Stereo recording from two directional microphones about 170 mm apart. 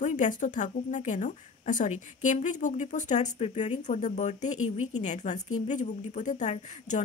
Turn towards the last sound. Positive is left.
turn(degrees=45)  # may be behind; listen again after turning